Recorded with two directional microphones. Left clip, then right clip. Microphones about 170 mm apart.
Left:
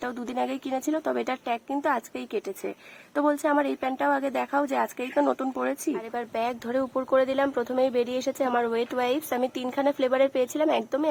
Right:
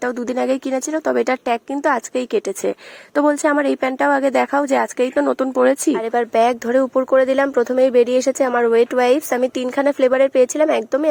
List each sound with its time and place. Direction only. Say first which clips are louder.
0.0 s speech: right 9 dB; 35° right (ahead or behind)